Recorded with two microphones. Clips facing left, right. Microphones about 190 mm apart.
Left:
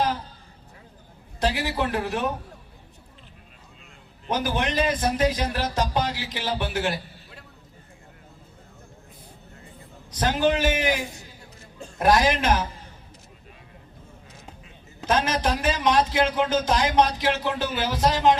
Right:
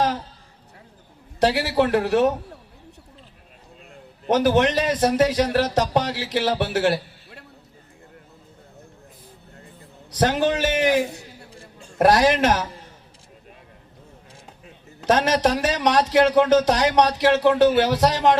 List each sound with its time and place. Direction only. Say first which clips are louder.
1.4 s a man's voice: right 6 dB; 75° right (ahead or behind)
4.3 s a man's voice: right 8 dB; 75° right (ahead or behind)
10.1 s a man's voice: right 2 dB; 70° right (ahead or behind)
11.9 s a man's voice: right 4 dB; 75° right (ahead or behind)
15.0 s a man's voice: right 5 dB; 75° right (ahead or behind)